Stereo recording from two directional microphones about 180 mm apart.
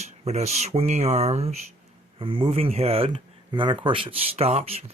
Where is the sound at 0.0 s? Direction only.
40° right (ahead or behind).